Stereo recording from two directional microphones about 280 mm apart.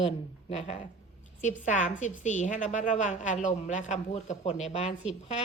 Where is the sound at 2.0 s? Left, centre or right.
Left.